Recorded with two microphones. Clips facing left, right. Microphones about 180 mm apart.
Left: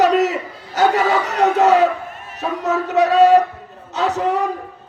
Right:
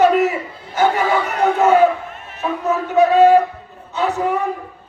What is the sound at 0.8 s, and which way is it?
A man's voice, 75° left (ahead or behind).